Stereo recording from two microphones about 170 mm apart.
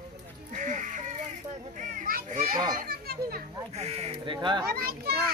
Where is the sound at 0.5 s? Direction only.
45° right (ahead or behind); by 3.4 s 60° right (ahead or behind).